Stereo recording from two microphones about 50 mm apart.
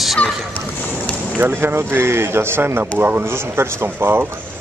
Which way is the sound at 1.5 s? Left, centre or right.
Right.